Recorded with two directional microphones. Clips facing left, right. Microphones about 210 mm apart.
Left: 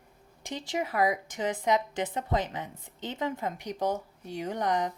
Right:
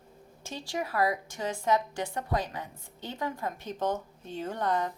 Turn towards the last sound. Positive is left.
turn(degrees=15)  # may be behind; listen again after turning